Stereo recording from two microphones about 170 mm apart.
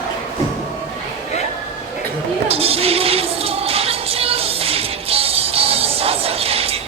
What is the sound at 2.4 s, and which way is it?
Music, 35° right (ahead or behind).